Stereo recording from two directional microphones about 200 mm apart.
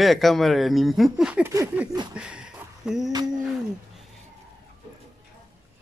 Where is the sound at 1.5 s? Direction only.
15° right (ahead or behind).